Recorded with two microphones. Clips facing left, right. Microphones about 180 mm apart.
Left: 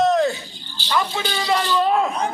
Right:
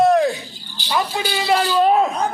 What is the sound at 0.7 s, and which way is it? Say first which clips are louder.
Speech: right 1 dB; 15° right (ahead or behind).